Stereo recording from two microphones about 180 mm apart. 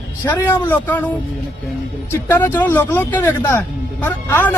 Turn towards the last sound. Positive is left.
turn(degrees=10)  # may be behind; listen again after turning